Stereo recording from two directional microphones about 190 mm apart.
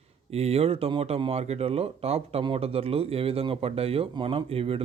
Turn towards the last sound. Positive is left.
turn(degrees=-30)  # may be behind; listen again after turning